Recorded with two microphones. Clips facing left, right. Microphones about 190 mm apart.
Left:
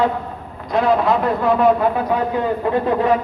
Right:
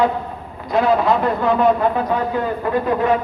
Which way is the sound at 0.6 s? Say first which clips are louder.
Even; centre (ahead or behind).